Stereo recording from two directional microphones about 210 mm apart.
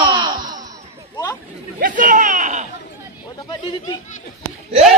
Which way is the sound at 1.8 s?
40° right (ahead or behind).